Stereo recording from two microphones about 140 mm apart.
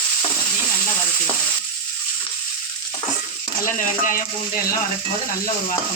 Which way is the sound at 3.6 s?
70° left (ahead or behind).